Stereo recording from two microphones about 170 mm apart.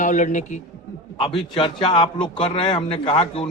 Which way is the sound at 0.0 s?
50° left (ahead or behind).